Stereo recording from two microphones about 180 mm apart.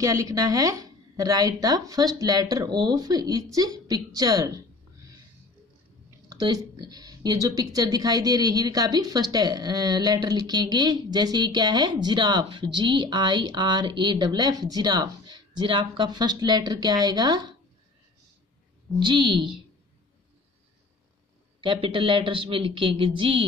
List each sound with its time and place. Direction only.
0.0 s speech: 20° right (ahead or behind)
6.2 s speech: 20° right (ahead or behind)
18.9 s speech: 25° right (ahead or behind)
21.5 s speech: 30° right (ahead or behind)